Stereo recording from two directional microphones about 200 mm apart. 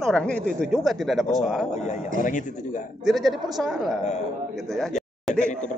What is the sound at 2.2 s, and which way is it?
Speech, 40° left (ahead or behind).